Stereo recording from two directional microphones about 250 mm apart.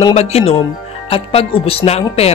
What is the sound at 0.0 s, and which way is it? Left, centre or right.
Speech, left.